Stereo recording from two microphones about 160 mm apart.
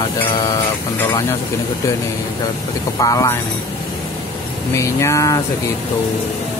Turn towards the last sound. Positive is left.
turn(degrees=20)  # may be behind; listen again after turning